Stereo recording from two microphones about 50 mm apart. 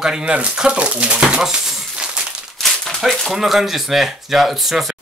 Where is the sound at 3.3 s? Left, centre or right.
Centre.